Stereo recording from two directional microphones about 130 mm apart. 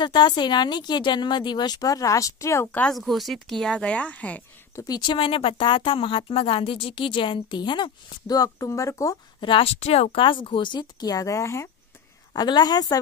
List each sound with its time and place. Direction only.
0.0 s speech: 35° left (ahead or behind); by 2.9 s 15° left (ahead or behind)
2.9 s a woman's voice: centre (ahead or behind)
4.7 s speech: 30° left (ahead or behind)
9.4 s speech: 45° left (ahead or behind); by 11.7 s 20° left (ahead or behind)
12.4 s speech: 30° left (ahead or behind)